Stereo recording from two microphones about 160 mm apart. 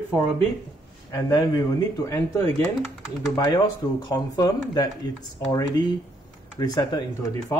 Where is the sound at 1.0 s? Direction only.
20° left (ahead or behind).